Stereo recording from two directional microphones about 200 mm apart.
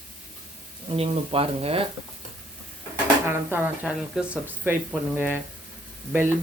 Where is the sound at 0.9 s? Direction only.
25° right (ahead or behind).